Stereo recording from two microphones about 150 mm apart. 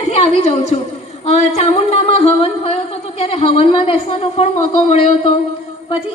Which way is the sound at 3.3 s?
40° left (ahead or behind).